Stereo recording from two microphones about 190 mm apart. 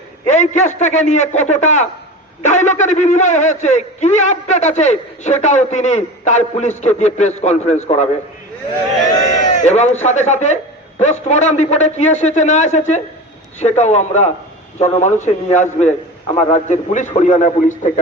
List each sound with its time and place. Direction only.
0.3 s a man's voice: 40° left (ahead or behind)
9.4 s a sound: 40° left (ahead or behind)
10.0 s a man's voice: 35° left (ahead or behind)